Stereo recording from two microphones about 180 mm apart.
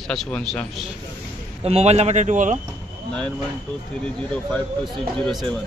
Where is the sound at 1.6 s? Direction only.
35° right (ahead or behind).